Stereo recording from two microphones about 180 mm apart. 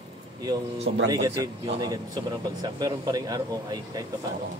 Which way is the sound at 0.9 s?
90° right.